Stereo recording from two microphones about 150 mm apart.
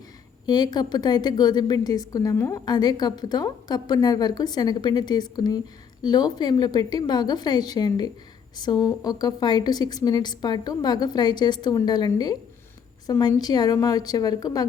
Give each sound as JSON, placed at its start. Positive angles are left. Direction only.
{"t": 0.4, "sound": "a woman's voice", "side_deg": 30}